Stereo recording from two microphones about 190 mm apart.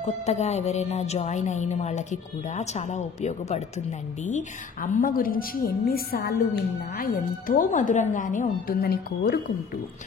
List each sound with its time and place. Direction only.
0.0 s a woman's voice: 35° left (ahead or behind); by 9.4 s 55° left (ahead or behind)